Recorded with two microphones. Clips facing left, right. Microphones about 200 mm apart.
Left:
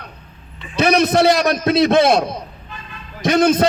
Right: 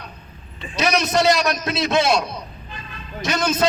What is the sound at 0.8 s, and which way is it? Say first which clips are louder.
A man's voice: left 5 dB; 55° left (ahead or behind).